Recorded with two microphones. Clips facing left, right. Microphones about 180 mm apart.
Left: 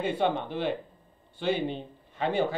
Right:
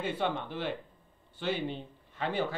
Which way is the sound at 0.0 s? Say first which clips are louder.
Left 5 dB; 20° left (ahead or behind).